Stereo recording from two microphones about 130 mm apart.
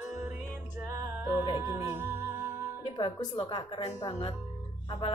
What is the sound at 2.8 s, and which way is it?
Speech, 35° left (ahead or behind).